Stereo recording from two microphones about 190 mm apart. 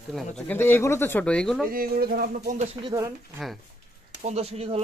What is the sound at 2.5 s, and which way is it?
Speech, 35° right (ahead or behind).